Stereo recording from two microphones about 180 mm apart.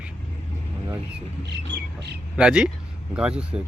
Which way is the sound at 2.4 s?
5° right (ahead or behind).